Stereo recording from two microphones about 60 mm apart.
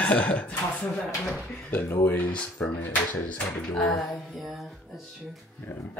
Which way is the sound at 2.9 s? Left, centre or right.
Left.